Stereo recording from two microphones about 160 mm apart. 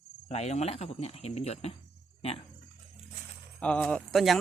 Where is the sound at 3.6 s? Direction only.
10° left (ahead or behind).